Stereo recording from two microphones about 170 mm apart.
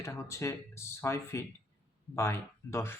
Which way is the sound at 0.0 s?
15° left (ahead or behind).